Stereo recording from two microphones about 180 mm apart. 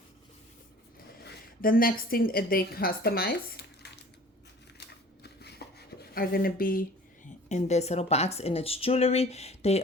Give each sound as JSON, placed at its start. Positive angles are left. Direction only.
{"t": 1.2, "sound": "a woman's voice", "side_deg": 50}
{"t": 5.2, "sound": "a sound", "side_deg": 65}
{"t": 7.4, "sound": "speech", "side_deg": 40}